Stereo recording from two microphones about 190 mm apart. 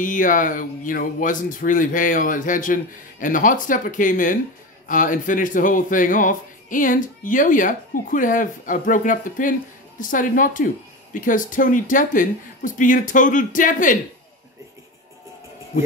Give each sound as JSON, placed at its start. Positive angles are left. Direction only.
{"t": 0.0, "sound": "speech", "side_deg": 45}